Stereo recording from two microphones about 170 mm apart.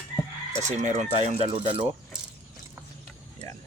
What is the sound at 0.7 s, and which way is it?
Speech, 45° right (ahead or behind).